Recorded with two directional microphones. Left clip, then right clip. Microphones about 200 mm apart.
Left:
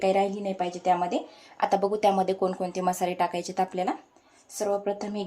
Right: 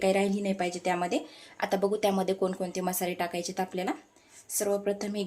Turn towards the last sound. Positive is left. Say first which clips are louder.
# left 1 dB
turn(degrees=-10)  # may be behind; listen again after turning